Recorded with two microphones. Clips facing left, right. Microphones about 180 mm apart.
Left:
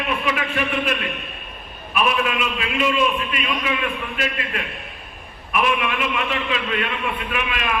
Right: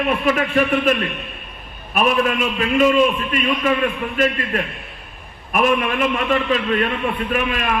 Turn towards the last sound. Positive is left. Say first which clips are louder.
# right 5 dB
turn(degrees=-40)  # may be behind; listen again after turning